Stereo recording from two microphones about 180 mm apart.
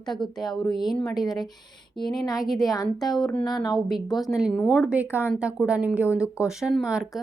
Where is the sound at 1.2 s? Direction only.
20° left (ahead or behind).